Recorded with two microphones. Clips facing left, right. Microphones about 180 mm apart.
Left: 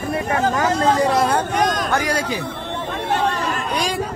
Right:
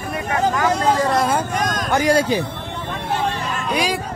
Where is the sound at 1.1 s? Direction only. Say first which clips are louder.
Left 1 dB; centre (ahead or behind).